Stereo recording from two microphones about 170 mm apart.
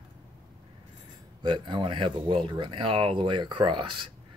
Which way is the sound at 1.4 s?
30° right (ahead or behind).